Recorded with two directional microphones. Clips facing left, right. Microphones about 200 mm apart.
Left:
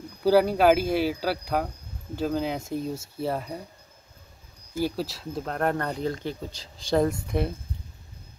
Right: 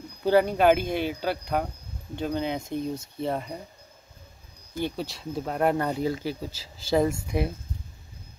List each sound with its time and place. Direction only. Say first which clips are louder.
0.2 s speech: left 1 dB; 5° left (ahead or behind)
4.7 s speech: left 2 dB; 5° left (ahead or behind)